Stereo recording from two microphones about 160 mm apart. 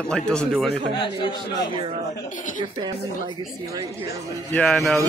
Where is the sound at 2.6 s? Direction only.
30° right (ahead or behind).